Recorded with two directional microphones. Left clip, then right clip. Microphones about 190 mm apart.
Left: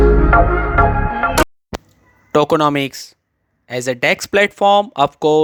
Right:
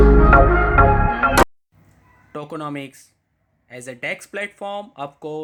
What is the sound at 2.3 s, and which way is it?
Speech, 50° left (ahead or behind).